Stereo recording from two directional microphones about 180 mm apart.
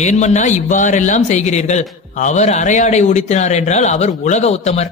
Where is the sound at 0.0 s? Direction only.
40° left (ahead or behind).